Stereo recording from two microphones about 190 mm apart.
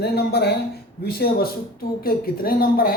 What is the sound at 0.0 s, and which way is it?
A woman's voice, 60° left (ahead or behind).